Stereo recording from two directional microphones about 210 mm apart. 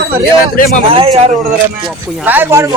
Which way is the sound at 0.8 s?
25° right (ahead or behind).